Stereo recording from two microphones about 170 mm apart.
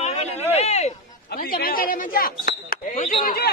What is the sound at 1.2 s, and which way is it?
Speech, 60° left (ahead or behind).